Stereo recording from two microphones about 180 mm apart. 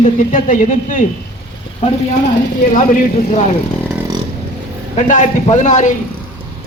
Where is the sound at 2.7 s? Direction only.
45° left (ahead or behind).